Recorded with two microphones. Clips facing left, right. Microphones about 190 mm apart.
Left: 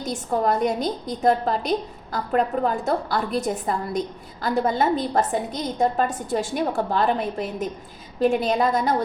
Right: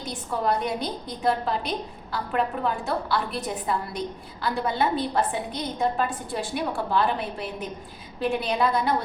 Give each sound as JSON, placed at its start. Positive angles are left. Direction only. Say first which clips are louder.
{"t": 0.0, "sound": "a woman's voice", "louder": "left 4 dB", "side_deg": 45}